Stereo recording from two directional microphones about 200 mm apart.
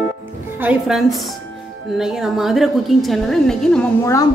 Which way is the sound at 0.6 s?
5° right (ahead or behind).